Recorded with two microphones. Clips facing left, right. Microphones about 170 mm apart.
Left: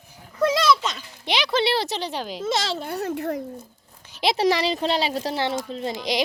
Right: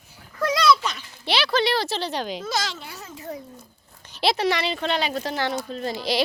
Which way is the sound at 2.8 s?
60° left (ahead or behind).